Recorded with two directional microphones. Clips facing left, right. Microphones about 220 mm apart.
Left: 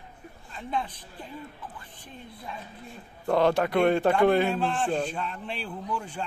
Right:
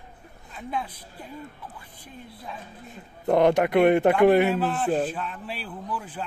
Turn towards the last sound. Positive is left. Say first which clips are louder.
# even
turn(degrees=-5)  # may be behind; listen again after turning